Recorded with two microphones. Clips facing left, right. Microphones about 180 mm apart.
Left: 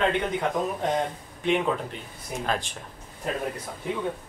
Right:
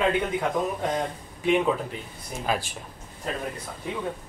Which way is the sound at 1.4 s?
5° right (ahead or behind).